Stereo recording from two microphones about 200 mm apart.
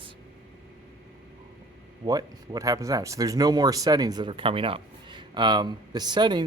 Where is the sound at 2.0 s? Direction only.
20° right (ahead or behind).